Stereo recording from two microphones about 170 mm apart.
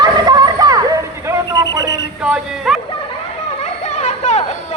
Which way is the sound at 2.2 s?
5° right (ahead or behind).